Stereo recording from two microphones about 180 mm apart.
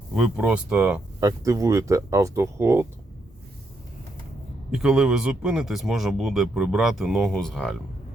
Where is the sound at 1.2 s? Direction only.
15° right (ahead or behind).